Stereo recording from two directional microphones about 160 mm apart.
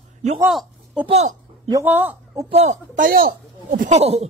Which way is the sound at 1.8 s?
10° right (ahead or behind).